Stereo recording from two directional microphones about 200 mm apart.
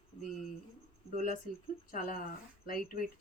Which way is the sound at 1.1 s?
40° left (ahead or behind).